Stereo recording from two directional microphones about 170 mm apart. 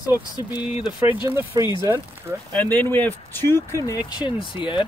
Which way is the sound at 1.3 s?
20° right (ahead or behind).